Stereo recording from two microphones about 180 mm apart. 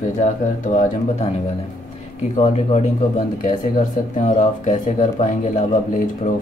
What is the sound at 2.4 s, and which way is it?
Speech, 40° left (ahead or behind).